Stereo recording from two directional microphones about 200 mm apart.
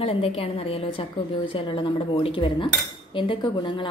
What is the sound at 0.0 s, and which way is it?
A woman's voice, 30° left (ahead or behind).